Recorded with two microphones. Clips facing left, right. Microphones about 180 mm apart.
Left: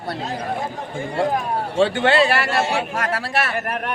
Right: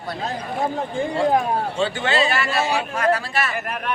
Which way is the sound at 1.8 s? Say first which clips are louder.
Left 7 dB; 60° left (ahead or behind).